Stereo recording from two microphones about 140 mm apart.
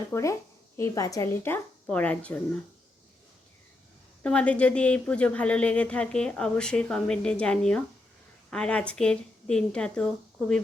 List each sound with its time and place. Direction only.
0.1 s speech: 20° left (ahead or behind)
4.2 s speech: 5° left (ahead or behind)